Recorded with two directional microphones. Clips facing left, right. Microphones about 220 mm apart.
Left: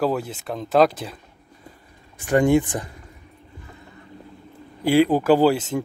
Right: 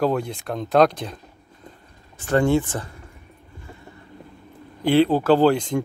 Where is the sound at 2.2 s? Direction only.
15° left (ahead or behind).